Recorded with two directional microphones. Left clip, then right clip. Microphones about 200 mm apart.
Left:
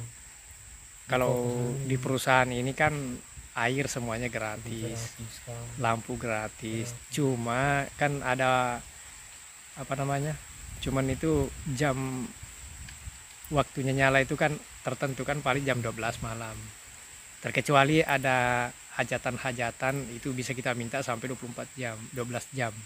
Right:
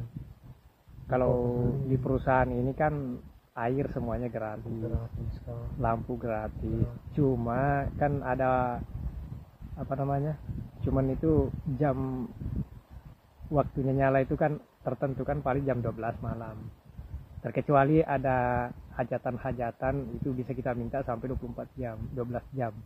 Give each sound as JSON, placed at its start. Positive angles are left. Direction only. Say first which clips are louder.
{"t": 1.0, "sound": "speech", "louder": "even", "side_deg": 25}
{"t": 5.8, "sound": "speech", "louder": "left 1 dB", "side_deg": 25}
{"t": 13.5, "sound": "speech", "louder": "even", "side_deg": 20}